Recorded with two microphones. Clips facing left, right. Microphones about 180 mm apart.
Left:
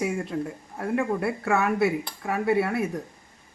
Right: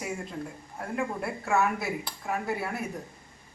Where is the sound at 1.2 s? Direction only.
70° left (ahead or behind).